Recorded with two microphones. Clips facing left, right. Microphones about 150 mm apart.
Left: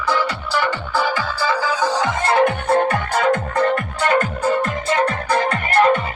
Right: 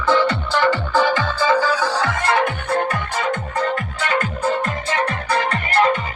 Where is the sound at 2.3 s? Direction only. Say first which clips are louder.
Left 5 dB; 30° left (ahead or behind).